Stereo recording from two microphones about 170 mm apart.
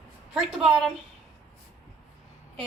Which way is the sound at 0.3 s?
Centre (ahead or behind).